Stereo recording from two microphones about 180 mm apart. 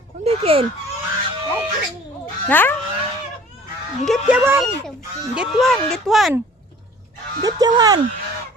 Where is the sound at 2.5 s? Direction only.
10° left (ahead or behind).